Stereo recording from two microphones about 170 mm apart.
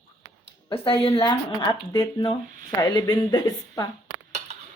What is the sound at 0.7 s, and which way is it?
Speech, 35° left (ahead or behind).